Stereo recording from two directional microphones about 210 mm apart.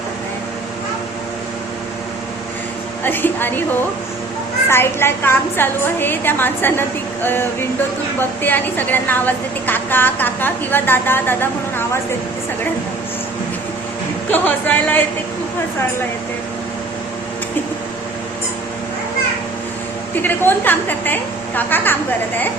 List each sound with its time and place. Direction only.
3.0 s a woman's voice: 10° left (ahead or behind)
4.7 s a woman's voice: 10° left (ahead or behind)
14.3 s a woman's voice: 10° left (ahead or behind)
20.2 s a woman's voice: 10° left (ahead or behind)